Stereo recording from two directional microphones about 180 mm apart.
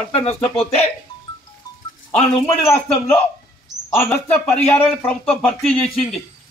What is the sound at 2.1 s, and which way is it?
Speech, 10° left (ahead or behind).